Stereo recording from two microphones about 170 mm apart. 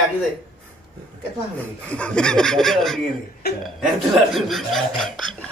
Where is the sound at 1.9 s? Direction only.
5° left (ahead or behind).